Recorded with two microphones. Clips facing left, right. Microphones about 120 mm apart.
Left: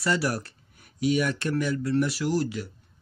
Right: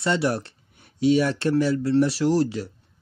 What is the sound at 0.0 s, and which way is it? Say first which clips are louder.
Speech: right 3 dB; 25° right (ahead or behind).